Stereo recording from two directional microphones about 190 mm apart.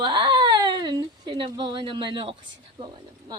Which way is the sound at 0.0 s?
20° right (ahead or behind).